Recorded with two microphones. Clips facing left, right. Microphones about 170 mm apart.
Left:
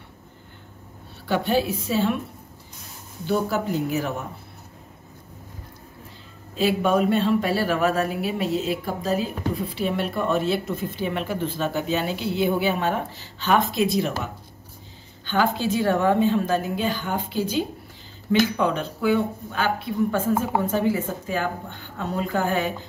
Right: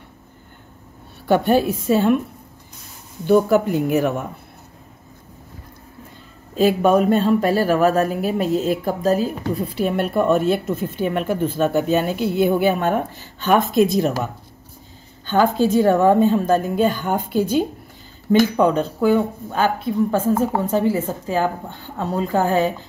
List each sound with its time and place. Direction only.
1.2 s speech: 50° right (ahead or behind)
3.3 s speech: 55° right (ahead or behind)
6.5 s speech: 45° right (ahead or behind)
18.6 s speech: 40° right (ahead or behind)